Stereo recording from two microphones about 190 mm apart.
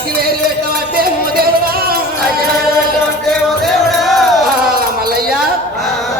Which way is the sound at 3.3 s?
Centre (ahead or behind).